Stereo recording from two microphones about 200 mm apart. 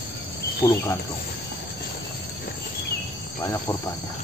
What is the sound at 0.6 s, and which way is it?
Speech, 15° left (ahead or behind).